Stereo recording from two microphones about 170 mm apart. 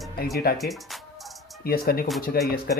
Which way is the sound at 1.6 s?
60° left (ahead or behind).